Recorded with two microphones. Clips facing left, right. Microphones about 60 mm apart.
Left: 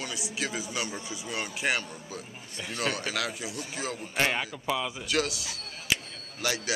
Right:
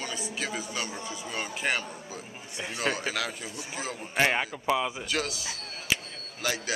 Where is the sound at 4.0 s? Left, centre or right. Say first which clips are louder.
Right 3 dB; centre.